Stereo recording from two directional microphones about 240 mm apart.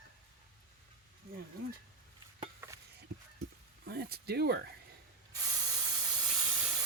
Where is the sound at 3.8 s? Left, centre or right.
Right.